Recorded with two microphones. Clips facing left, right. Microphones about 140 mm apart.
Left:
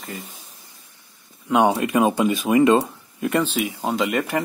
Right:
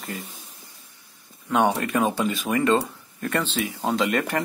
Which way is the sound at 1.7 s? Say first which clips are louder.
Left 4 dB; 15° left (ahead or behind).